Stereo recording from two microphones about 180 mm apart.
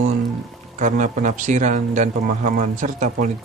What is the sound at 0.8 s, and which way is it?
Speech, 45° right (ahead or behind).